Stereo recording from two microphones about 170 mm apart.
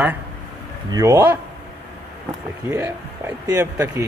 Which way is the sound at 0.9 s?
20° right (ahead or behind).